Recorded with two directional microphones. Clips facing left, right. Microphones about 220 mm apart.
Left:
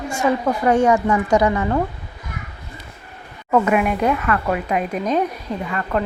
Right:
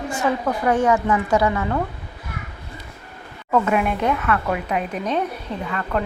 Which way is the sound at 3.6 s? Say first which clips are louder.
Left 2 dB; 5° left (ahead or behind).